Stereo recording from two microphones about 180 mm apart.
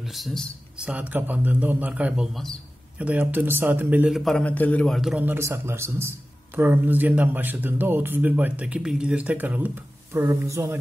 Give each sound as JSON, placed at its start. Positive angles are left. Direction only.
{"t": 0.0, "sound": "speech", "side_deg": 0}